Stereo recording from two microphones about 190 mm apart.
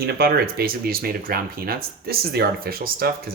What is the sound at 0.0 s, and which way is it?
Speech, 55° right (ahead or behind).